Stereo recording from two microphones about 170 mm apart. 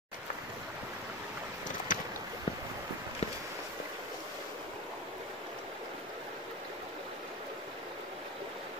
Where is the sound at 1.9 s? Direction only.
50° left (ahead or behind).